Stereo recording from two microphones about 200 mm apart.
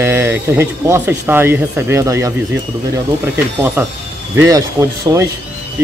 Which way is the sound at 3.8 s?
10° right (ahead or behind).